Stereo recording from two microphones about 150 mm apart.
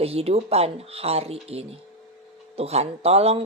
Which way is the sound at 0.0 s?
40° right (ahead or behind).